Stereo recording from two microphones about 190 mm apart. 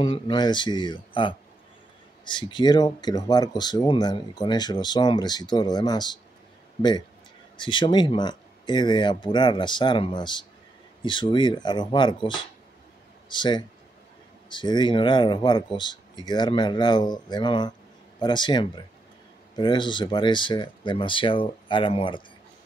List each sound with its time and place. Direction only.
0.0 s speech: 25° left (ahead or behind)
7.5 s speech: 25° left (ahead or behind)